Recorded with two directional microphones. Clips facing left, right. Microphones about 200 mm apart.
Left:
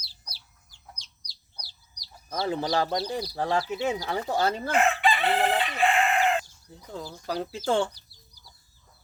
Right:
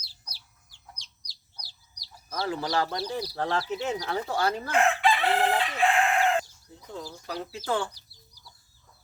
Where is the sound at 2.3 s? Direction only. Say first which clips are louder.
Left 2 dB; 20° left (ahead or behind).